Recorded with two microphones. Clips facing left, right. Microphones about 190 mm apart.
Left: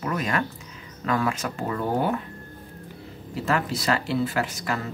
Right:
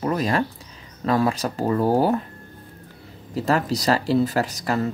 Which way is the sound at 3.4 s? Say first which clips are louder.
Right 4 dB; 40° right (ahead or behind).